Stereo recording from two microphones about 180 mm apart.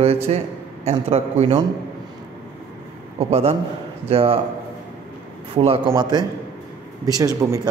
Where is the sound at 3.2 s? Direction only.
35° right (ahead or behind).